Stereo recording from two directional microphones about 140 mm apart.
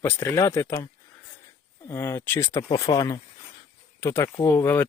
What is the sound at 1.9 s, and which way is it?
Speech, 15° left (ahead or behind).